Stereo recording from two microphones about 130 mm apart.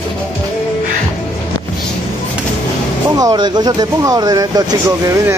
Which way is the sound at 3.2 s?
30° right (ahead or behind).